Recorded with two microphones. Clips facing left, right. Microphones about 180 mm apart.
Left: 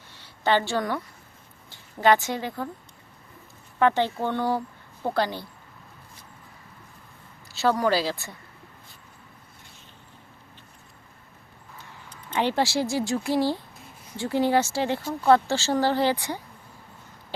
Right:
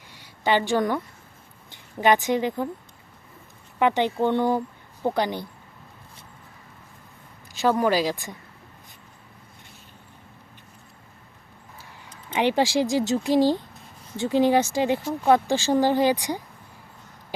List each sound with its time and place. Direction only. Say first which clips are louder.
0.1 s a sound: right 1 dB; 15° right (ahead or behind)
1.7 s speech: even; 15° right (ahead or behind)
3.8 s speech: right 1 dB; 15° right (ahead or behind)
7.5 s speech: right 2 dB; 15° right (ahead or behind)
12.3 s speech: right 3 dB; 15° right (ahead or behind)